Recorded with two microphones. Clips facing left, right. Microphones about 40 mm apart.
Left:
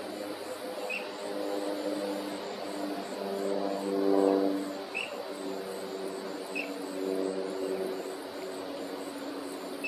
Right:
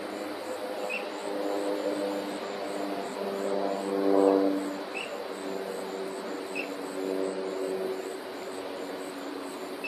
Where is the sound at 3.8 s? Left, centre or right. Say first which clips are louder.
Right 2 dB; centre.